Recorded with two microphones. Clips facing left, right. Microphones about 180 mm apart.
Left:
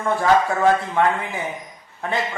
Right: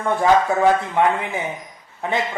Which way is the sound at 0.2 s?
20° right (ahead or behind).